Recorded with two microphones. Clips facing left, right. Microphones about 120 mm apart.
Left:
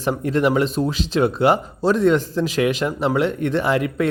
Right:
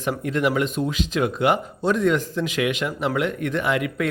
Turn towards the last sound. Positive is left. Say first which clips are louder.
# left 3 dB
turn(degrees=35)  # may be behind; listen again after turning